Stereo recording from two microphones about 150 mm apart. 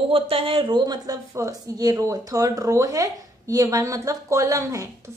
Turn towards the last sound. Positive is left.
turn(degrees=-20)  # may be behind; listen again after turning